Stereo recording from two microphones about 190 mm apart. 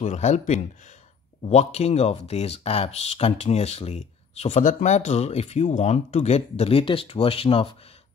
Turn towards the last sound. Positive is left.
turn(degrees=30)  # may be behind; listen again after turning